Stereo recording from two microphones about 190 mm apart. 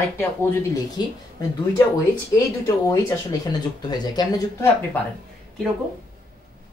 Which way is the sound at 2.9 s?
20° left (ahead or behind).